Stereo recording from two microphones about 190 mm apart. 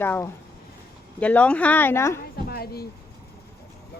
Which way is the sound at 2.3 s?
55° left (ahead or behind).